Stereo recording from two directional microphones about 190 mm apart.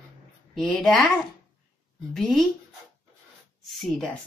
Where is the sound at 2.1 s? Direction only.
Centre (ahead or behind).